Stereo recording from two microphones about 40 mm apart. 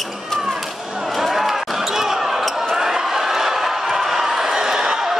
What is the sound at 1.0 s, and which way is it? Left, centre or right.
Basketball bounce, centre.